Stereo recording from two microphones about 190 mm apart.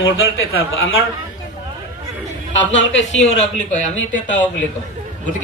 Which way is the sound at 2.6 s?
75° left (ahead or behind).